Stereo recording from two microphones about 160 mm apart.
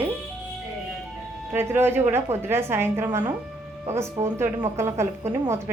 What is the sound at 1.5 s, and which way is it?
A woman's voice, 15° right (ahead or behind).